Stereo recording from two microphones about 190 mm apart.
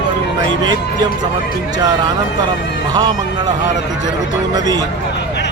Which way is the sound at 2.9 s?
20° right (ahead or behind).